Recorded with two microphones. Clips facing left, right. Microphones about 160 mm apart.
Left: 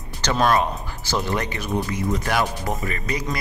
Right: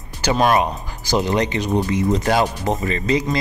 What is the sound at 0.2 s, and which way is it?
Speech, 15° right (ahead or behind).